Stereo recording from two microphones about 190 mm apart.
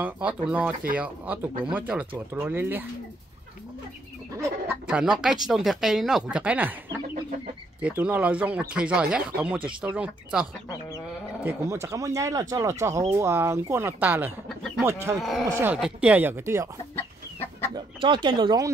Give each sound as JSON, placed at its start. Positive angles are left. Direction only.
{"t": 0.0, "sound": "speech", "side_deg": -5}
{"t": 4.4, "sound": "speech", "side_deg": -10}
{"t": 7.8, "sound": "speech", "side_deg": -10}
{"t": 11.4, "sound": "speech", "side_deg": -15}
{"t": 15.2, "sound": "speech", "side_deg": 0}
{"t": 16.9, "sound": "chicken", "side_deg": 10}
{"t": 17.7, "sound": "speech", "side_deg": -25}